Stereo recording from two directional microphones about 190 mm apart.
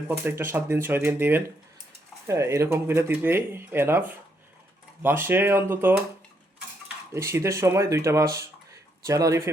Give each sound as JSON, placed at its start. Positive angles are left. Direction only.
{"t": 0.1, "sound": "speech", "side_deg": -10}